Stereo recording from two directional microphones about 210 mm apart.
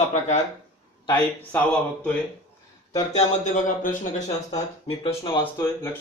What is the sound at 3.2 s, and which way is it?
Speech, 35° left (ahead or behind).